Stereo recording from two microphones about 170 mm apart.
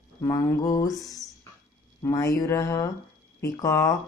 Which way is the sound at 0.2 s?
15° left (ahead or behind).